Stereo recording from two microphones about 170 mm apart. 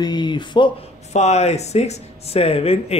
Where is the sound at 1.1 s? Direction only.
40° left (ahead or behind).